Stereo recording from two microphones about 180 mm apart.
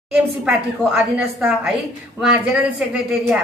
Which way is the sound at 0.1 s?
5° right (ahead or behind).